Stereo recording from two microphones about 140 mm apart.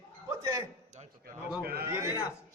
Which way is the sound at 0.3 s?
20° right (ahead or behind).